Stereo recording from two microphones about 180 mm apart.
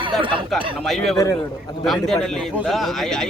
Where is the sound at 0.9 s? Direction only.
Centre (ahead or behind).